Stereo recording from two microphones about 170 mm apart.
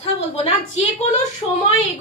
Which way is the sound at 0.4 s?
40° left (ahead or behind).